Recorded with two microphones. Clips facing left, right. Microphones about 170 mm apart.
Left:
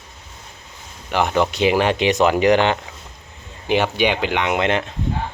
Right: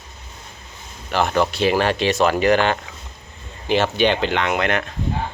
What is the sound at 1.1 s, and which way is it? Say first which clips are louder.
Speech: left 1 dB; 15° left (ahead or behind).